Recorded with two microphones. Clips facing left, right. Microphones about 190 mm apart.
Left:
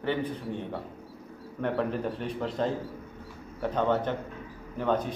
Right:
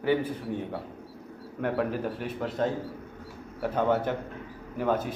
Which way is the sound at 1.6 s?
5° right (ahead or behind).